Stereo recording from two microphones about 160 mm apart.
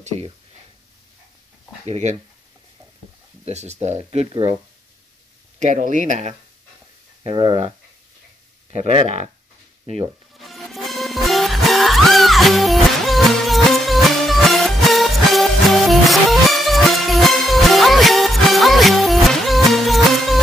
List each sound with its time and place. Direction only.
1.9 s speech: 45° right (ahead or behind)
3.4 s speech: 45° right (ahead or behind)
5.6 s speech: 50° right (ahead or behind)
7.2 s speech: 35° right (ahead or behind)
8.7 s speech: 45° right (ahead or behind)
10.3 s music: centre (ahead or behind)